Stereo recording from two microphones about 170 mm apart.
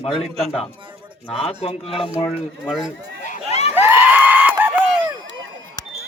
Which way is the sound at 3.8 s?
10° right (ahead or behind).